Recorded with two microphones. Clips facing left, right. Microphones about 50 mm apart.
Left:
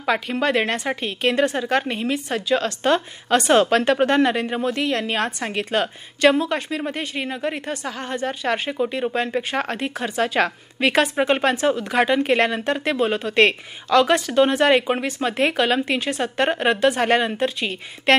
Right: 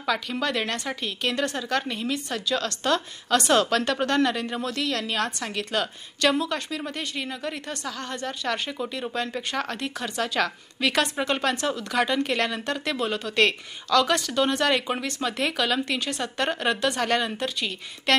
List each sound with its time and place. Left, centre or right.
0.0 s speech: left